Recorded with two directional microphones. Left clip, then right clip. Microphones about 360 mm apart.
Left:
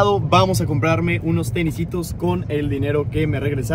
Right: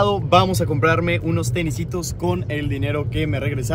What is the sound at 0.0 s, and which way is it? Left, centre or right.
Speech, centre.